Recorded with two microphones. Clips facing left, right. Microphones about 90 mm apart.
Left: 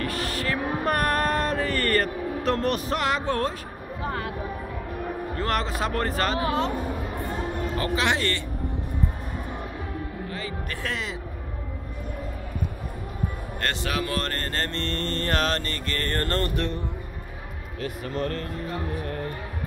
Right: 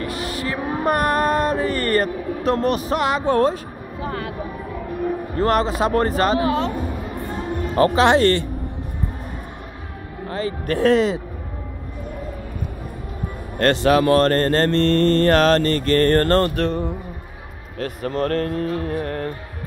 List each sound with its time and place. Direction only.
0.0 s a sound: 15° right (ahead or behind)
2.4 s music: 10° right (ahead or behind)
3.3 s speech: 25° right (ahead or behind)
5.3 s speech: 20° right (ahead or behind)
7.7 s speech: 40° right (ahead or behind)
10.2 s a man's voice: 35° right (ahead or behind)
13.6 s speech: 50° right (ahead or behind); by 16.7 s 90° right
17.7 s music: 50° right (ahead or behind)